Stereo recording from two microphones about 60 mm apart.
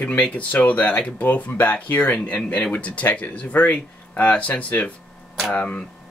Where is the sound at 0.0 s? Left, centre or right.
Left.